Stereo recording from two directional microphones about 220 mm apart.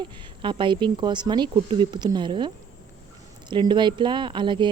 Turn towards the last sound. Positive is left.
turn(degrees=-20)  # may be behind; listen again after turning